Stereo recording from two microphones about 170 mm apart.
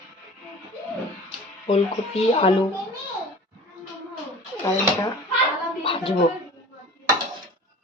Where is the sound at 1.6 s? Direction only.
35° left (ahead or behind).